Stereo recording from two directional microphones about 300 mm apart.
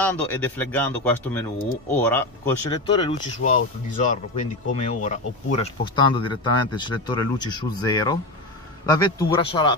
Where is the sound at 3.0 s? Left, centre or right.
Left.